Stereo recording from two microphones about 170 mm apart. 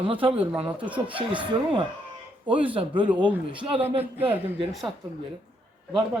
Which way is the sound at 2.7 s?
30° right (ahead or behind).